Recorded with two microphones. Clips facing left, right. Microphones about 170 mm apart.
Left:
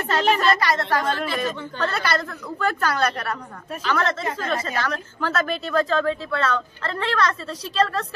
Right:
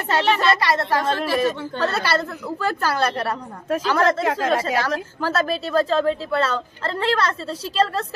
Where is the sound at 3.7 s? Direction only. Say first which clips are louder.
Right 5 dB; 90° right.